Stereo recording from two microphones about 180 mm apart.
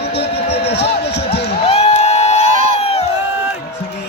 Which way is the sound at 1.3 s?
35° left (ahead or behind).